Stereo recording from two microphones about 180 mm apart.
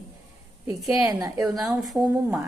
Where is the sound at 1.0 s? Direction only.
20° right (ahead or behind).